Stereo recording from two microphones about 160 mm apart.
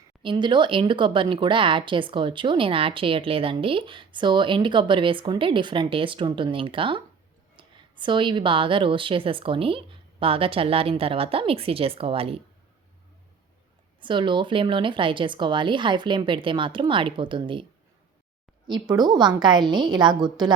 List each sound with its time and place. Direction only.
0.2 s speech: 30° right (ahead or behind)
14.0 s speech: 30° right (ahead or behind)
18.7 s a woman's voice: 25° right (ahead or behind)